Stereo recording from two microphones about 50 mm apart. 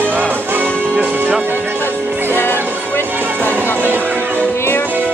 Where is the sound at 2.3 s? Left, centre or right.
Left.